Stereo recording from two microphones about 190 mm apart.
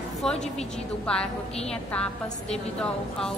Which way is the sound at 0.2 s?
5° left (ahead or behind).